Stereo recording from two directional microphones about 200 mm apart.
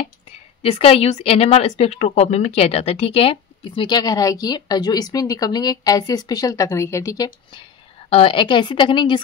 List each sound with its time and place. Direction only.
0.6 s speech: 30° left (ahead or behind)